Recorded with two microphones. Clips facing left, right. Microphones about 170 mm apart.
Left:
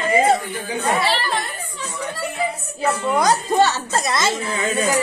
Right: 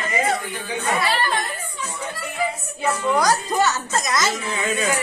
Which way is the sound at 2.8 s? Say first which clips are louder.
Left 1 dB; 30° left (ahead or behind).